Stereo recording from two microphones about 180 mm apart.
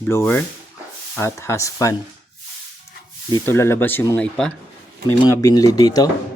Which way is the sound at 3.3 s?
15° left (ahead or behind).